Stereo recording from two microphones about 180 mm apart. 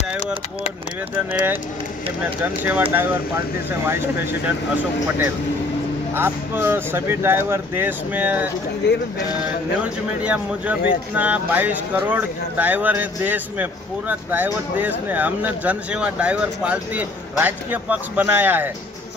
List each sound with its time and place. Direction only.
1.1 s speech: 10° right (ahead or behind)
6.1 s speech: 10° right (ahead or behind)
10.2 s speech: 5° right (ahead or behind)